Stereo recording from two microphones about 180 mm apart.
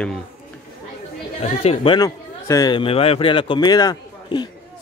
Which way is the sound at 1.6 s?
35° left (ahead or behind).